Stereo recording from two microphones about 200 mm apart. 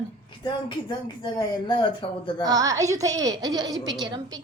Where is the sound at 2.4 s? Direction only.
15° right (ahead or behind).